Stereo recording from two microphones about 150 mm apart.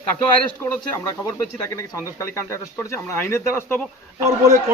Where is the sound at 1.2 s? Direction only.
20° left (ahead or behind).